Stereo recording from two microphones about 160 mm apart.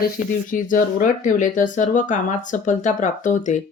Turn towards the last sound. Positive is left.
turn(degrees=50)  # may be behind; listen again after turning